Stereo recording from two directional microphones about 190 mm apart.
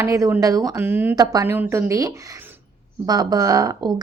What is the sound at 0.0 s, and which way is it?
Speech, 15° right (ahead or behind).